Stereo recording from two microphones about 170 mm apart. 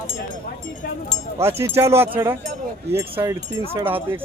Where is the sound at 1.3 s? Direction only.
15° right (ahead or behind).